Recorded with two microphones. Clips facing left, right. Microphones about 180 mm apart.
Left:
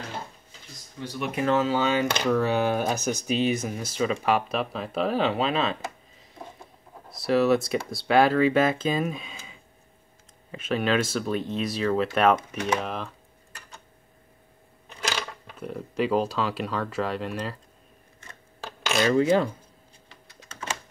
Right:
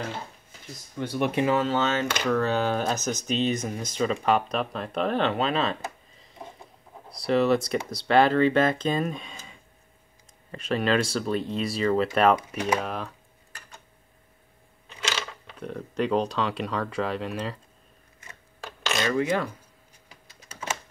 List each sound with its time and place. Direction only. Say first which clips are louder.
0.9 s speech: right 5 dB; 60° right (ahead or behind)
1.6 s speech: left 2 dB; 10° left (ahead or behind)
15.1 s speech: left 1 dB; 10° left (ahead or behind)
18.9 s coin: left 5 dB; 30° left (ahead or behind)